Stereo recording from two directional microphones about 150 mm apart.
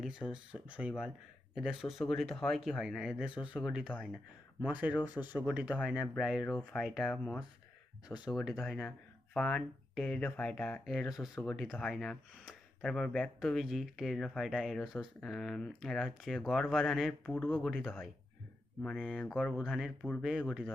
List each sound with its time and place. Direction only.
0.0 s speech: 5° right (ahead or behind)
8.0 s speech: 30° left (ahead or behind)
8.3 s speech: centre (ahead or behind)